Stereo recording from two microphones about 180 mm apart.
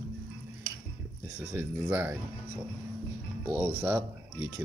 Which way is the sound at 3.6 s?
10° right (ahead or behind).